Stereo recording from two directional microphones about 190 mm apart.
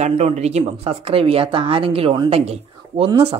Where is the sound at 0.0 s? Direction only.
35° right (ahead or behind).